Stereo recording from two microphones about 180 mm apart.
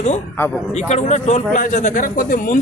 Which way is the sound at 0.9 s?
40° left (ahead or behind).